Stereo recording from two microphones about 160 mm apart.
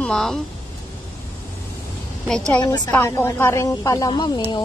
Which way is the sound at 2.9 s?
15° left (ahead or behind).